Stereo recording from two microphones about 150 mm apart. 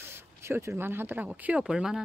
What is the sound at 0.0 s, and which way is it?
Speech, 15° right (ahead or behind).